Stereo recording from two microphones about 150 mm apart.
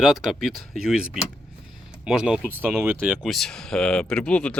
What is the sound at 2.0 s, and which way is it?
Speech, 5° right (ahead or behind).